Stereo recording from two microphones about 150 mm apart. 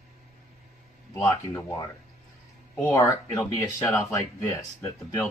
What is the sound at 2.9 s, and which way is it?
Speech, 25° left (ahead or behind).